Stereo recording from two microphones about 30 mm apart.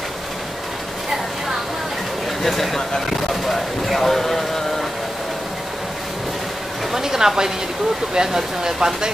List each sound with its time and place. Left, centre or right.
2.4 s speech: centre
6.9 s a woman's voice: centre